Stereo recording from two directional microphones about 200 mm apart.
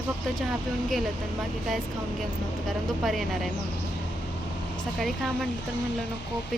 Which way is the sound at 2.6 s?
Centre (ahead or behind).